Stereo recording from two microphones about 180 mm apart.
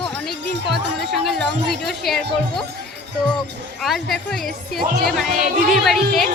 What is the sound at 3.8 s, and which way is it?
A woman's voice, centre (ahead or behind).